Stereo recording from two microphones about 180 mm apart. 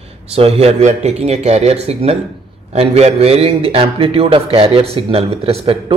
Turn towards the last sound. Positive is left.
turn(degrees=-30)  # may be behind; listen again after turning